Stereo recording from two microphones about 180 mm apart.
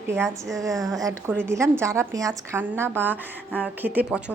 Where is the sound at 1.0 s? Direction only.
10° right (ahead or behind).